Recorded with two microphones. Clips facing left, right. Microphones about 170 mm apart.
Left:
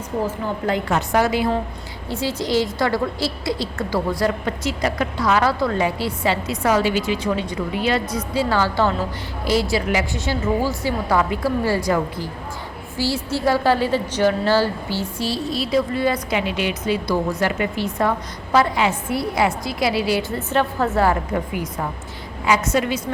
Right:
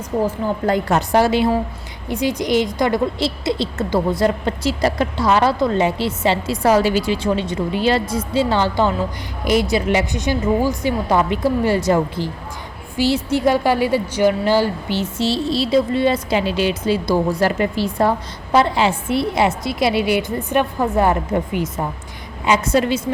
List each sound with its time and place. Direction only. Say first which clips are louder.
0.7 s a woman's voice: right 3 dB; 40° right (ahead or behind)
2.0 s a woman's voice: right 4 dB; 15° right (ahead or behind); by 23.0 s 35° right (ahead or behind)